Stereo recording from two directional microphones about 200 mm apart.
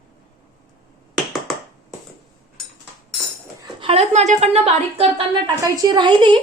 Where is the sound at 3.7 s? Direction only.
30° right (ahead or behind).